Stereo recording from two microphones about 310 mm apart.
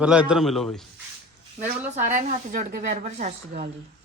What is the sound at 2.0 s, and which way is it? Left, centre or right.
A woman's voice, right.